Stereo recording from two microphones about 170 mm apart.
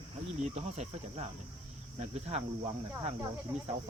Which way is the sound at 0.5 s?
40° right (ahead or behind).